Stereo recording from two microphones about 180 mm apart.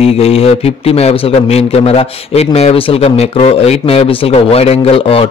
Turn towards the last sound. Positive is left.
turn(degrees=30)  # may be behind; listen again after turning